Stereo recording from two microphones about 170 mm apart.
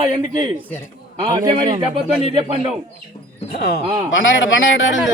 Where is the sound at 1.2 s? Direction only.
25° right (ahead or behind).